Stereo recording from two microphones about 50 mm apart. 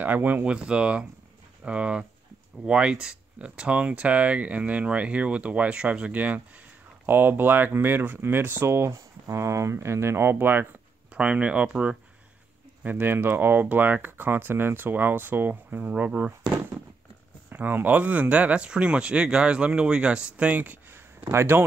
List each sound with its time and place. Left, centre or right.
0.0 s speech: right
0.5 s speech: right
7.1 s speech: right
8.6 s speech: right
11.1 s speech: right
12.8 s speech: right
17.5 s speech: right
20.5 s speech: right
20.9 s a sound: right